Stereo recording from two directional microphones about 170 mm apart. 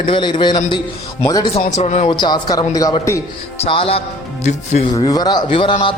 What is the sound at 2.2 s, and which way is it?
Speech, 25° left (ahead or behind).